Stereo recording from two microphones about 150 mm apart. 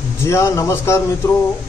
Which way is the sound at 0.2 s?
20° left (ahead or behind).